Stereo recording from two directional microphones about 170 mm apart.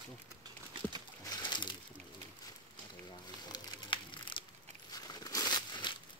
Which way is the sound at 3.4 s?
25° left (ahead or behind).